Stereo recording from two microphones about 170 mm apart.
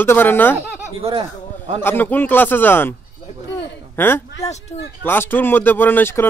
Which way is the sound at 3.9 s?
15° left (ahead or behind).